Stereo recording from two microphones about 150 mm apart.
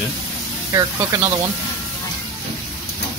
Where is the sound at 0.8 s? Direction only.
20° right (ahead or behind).